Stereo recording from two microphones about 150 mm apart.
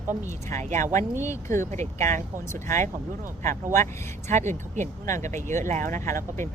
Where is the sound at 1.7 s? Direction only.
50° right (ahead or behind).